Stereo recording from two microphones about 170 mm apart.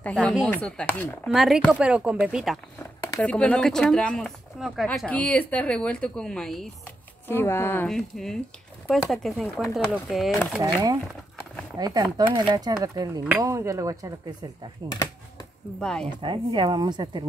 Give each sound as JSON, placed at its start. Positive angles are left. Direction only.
{"t": 0.0, "sound": "speech", "side_deg": 5}
{"t": 3.0, "sound": "speech", "side_deg": 10}
{"t": 7.2, "sound": "speech", "side_deg": 15}
{"t": 10.6, "sound": "a woman's voice", "side_deg": -20}
{"t": 15.8, "sound": "speech", "side_deg": 5}
{"t": 16.2, "sound": "a woman's voice", "side_deg": -30}